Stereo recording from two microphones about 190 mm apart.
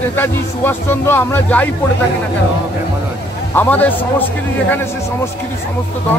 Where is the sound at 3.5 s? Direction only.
10° left (ahead or behind).